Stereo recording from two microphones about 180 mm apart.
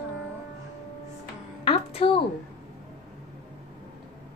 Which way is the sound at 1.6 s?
30° left (ahead or behind).